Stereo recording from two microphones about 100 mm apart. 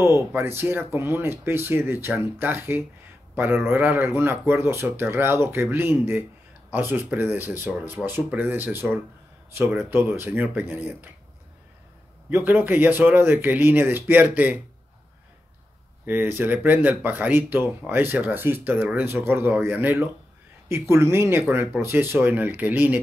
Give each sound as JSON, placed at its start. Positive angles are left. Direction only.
{"t": 0.0, "sound": "speech", "side_deg": -25}
{"t": 12.3, "sound": "speech", "side_deg": -25}
{"t": 16.1, "sound": "speech", "side_deg": -20}